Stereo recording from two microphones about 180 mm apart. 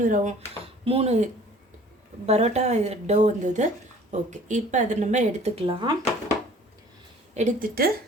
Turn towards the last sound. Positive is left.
turn(degrees=-55)  # may be behind; listen again after turning